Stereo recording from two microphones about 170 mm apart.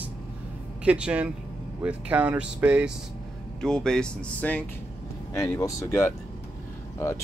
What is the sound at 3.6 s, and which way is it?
Speech, 5° left (ahead or behind).